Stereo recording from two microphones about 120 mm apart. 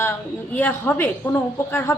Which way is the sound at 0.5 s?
15° left (ahead or behind).